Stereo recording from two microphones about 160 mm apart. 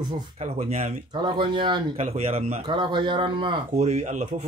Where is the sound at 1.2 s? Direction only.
30° right (ahead or behind).